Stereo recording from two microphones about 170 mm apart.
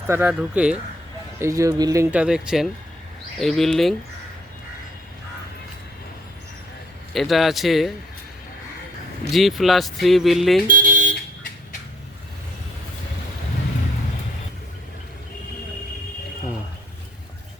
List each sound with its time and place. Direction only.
0.1 s speech: 10° right (ahead or behind)
1.4 s speech: 20° right (ahead or behind)
2.0 s speech: 5° right (ahead or behind)
7.1 s speech: centre (ahead or behind)
9.3 s speech: centre (ahead or behind)
10.7 s vehicle: 50° right (ahead or behind)